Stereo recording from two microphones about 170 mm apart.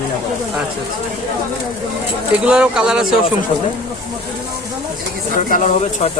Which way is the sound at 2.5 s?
5° right (ahead or behind).